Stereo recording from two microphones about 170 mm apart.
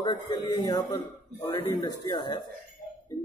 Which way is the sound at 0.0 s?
25° left (ahead or behind).